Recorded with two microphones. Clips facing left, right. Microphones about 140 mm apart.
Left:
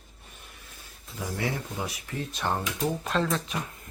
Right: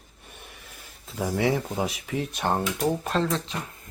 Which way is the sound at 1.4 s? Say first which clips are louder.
Right 7 dB; 90° right.